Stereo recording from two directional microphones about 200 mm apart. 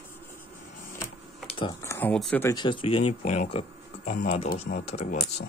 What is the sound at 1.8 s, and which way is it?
Speech, 10° left (ahead or behind).